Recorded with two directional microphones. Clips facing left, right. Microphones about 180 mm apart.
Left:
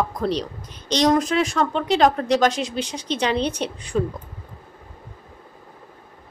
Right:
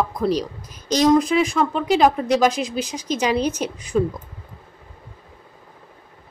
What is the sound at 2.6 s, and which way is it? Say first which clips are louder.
Speech: right 1 dB; 35° left (ahead or behind).